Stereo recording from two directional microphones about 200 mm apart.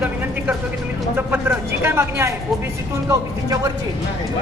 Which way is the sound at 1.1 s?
10° right (ahead or behind).